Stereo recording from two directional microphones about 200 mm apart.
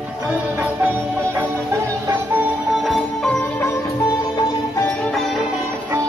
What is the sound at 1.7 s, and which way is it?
Music, 15° right (ahead or behind).